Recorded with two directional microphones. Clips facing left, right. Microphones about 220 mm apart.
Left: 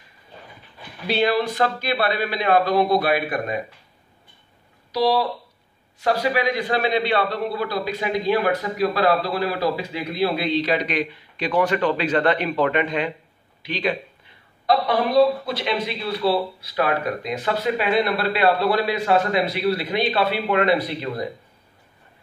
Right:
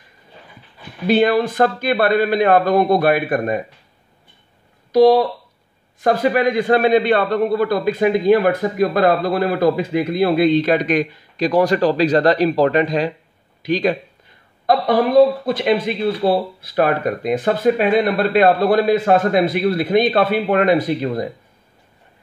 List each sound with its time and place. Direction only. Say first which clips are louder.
1.0 s a man's voice: right 6 dB; 50° right (ahead or behind)
4.9 s a man's voice: right 9 dB; 50° right (ahead or behind)
15.4 s a man's voice: right 7 dB; 50° right (ahead or behind)